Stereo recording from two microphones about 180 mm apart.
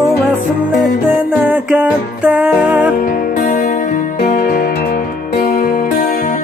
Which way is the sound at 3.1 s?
50° left (ahead or behind).